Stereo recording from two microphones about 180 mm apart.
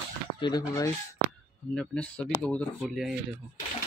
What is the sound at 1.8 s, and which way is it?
Speech, 5° left (ahead or behind).